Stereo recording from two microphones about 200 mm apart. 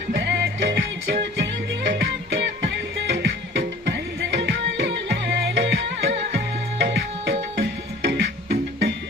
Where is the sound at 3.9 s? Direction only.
60° right (ahead or behind).